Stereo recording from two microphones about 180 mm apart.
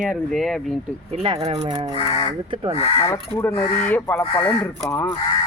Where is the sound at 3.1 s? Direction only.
15° left (ahead or behind).